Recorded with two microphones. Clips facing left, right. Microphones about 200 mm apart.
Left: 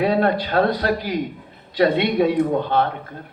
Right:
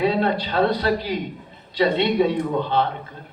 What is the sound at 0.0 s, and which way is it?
A man's voice, 50° left (ahead or behind).